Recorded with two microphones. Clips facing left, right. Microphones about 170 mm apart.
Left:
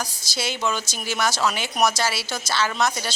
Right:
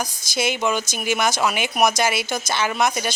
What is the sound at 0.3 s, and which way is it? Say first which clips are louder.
A woman's voice: right 4 dB; 15° right (ahead or behind).